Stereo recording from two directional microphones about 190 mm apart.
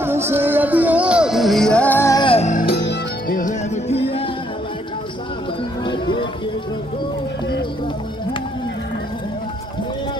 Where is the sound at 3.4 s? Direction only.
35° left (ahead or behind).